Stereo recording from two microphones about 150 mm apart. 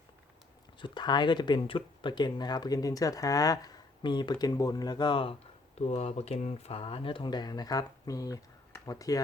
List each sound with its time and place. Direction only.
0.8 s speech: 30° left (ahead or behind)
5.8 s speech: 45° left (ahead or behind); by 9.2 s 25° left (ahead or behind)